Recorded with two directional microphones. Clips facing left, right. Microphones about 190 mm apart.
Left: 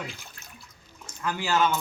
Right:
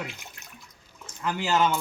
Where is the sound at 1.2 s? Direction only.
20° right (ahead or behind).